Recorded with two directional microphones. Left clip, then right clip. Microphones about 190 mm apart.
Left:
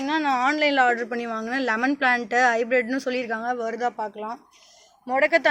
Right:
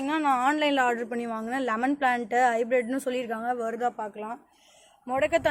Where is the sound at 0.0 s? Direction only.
Centre (ahead or behind).